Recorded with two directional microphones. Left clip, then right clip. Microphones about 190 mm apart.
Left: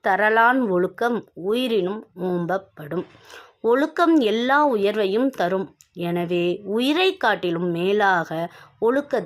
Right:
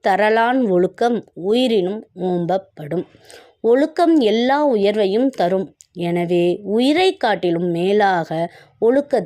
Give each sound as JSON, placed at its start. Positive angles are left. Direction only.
{"t": 0.0, "sound": "speech", "side_deg": -30}